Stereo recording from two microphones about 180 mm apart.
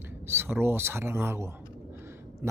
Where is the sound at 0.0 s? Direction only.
10° right (ahead or behind).